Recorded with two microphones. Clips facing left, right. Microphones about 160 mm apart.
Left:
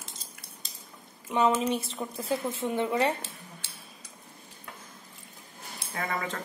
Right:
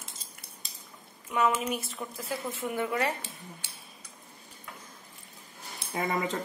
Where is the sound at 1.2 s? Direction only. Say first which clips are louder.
Left 3 dB; 25° left (ahead or behind).